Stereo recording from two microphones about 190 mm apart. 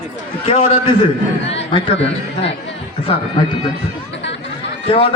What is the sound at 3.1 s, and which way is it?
Speech, 30° left (ahead or behind).